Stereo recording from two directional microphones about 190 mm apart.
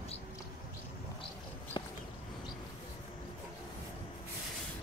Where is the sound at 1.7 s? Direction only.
25° left (ahead or behind).